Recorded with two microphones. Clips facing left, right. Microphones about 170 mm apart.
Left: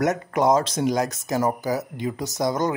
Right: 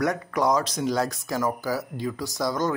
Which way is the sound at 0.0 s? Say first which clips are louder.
Left 3 dB; 20° left (ahead or behind).